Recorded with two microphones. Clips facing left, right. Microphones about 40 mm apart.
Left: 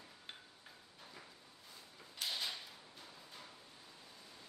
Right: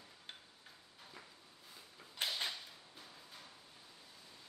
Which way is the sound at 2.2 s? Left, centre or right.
Right.